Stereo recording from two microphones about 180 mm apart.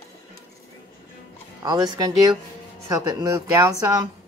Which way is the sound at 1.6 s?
20° right (ahead or behind).